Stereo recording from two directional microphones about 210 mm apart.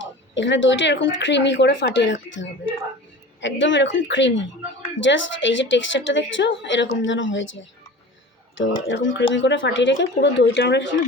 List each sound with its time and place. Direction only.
0.0 s a woman's voice: 60° left (ahead or behind)
3.4 s a woman's voice: 60° left (ahead or behind)